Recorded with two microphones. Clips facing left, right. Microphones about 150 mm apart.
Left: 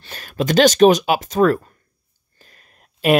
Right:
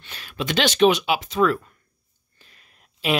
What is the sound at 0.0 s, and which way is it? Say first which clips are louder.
Speech: left 7 dB; 45° left (ahead or behind).